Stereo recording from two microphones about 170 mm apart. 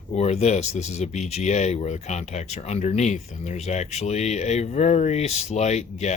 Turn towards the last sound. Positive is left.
turn(degrees=40)  # may be behind; listen again after turning